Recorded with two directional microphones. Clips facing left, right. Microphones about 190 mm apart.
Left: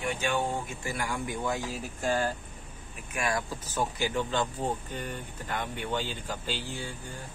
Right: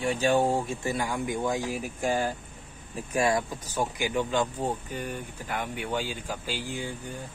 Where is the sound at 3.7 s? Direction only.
15° right (ahead or behind).